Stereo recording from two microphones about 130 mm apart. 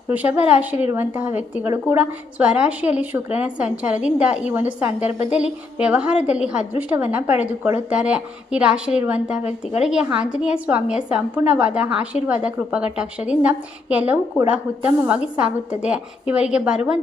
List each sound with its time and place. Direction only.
0.1 s a woman's voice: 10° right (ahead or behind)
9.4 s speech: 55° left (ahead or behind)
9.8 s a woman's voice: 5° right (ahead or behind)